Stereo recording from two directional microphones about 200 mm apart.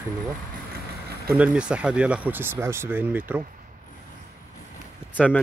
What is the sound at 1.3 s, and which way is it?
Speech, 5° right (ahead or behind).